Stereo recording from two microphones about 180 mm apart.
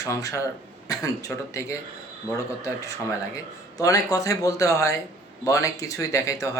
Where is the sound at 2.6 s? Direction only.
15° left (ahead or behind).